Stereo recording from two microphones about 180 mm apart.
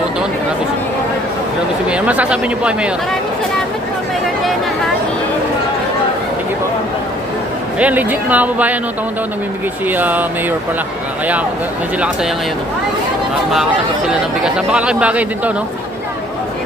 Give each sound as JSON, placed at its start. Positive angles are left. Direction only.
{"t": 1.9, "sound": "speech", "side_deg": -5}
{"t": 7.8, "sound": "speech", "side_deg": -10}
{"t": 9.8, "sound": "speech", "side_deg": -10}
{"t": 11.9, "sound": "speech", "side_deg": -5}
{"t": 14.1, "sound": "speech", "side_deg": -5}